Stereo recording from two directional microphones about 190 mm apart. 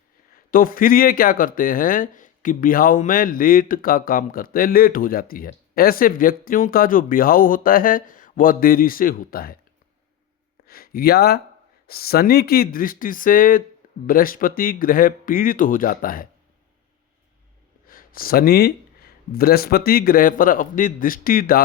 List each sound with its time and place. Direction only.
0.3 s speech: 50° left (ahead or behind)
10.7 s speech: 50° left (ahead or behind)
17.8 s speech: 50° left (ahead or behind)